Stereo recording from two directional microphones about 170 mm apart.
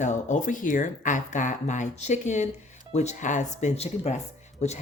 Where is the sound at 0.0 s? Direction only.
45° left (ahead or behind).